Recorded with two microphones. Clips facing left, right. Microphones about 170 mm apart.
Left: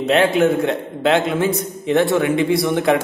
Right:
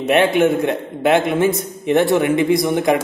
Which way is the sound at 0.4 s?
15° right (ahead or behind).